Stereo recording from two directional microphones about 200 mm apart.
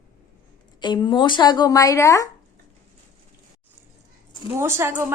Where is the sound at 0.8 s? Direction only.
20° left (ahead or behind).